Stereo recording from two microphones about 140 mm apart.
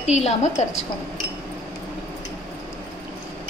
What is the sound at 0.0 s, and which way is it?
Speech, 50° left (ahead or behind).